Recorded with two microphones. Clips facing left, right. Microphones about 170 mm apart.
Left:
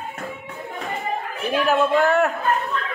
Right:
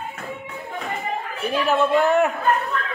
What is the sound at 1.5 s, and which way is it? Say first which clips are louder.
Speech: even; 5° left (ahead or behind).